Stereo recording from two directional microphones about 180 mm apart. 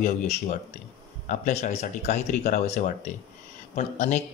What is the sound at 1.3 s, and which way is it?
Speech, 40° left (ahead or behind).